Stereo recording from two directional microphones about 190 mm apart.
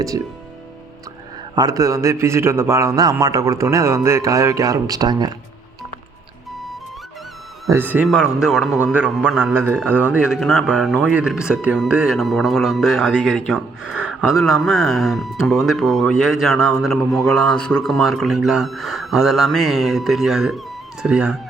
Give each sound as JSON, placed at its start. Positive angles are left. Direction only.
{"t": 1.5, "sound": "a man's voice", "side_deg": -20}
{"t": 7.7, "sound": "a man's voice", "side_deg": -10}